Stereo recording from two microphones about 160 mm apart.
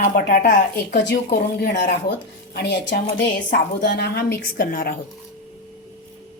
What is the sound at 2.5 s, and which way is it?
Speech, 90° left.